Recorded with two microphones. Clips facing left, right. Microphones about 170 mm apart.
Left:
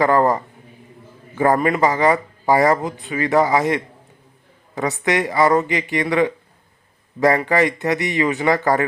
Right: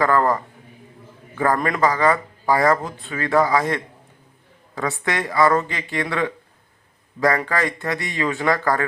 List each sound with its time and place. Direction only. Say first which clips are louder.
0.0 s speech: left 3 dB; 20° left (ahead or behind)
1.5 s speech: left 4 dB; 10° left (ahead or behind)
1.8 s speech: left 2 dB; 20° left (ahead or behind)